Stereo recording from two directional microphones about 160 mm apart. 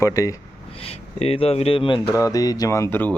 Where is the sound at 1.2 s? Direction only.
40° left (ahead or behind).